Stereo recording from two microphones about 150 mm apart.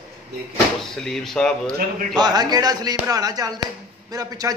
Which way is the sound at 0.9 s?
5° left (ahead or behind).